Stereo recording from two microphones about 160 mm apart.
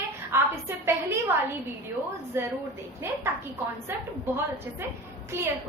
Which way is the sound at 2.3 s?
15° right (ahead or behind).